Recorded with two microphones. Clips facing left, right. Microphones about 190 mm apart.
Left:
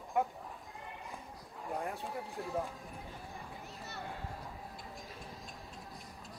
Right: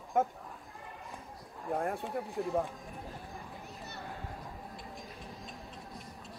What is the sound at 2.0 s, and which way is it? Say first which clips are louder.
Speech: right 5 dB; centre (ahead or behind).